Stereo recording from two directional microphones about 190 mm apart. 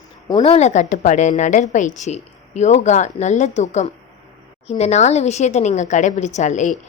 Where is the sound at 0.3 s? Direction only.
25° left (ahead or behind).